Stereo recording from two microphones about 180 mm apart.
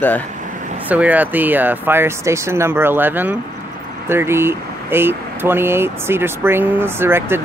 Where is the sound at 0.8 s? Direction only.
10° right (ahead or behind).